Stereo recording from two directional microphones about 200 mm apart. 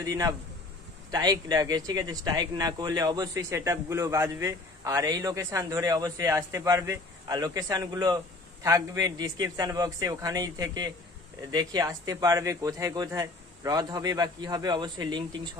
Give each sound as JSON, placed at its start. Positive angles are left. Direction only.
{"t": 0.0, "sound": "a man's voice", "side_deg": -15}